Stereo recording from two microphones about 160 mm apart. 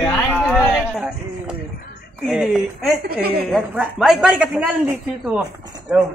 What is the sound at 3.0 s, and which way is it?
Speech, 75° right (ahead or behind).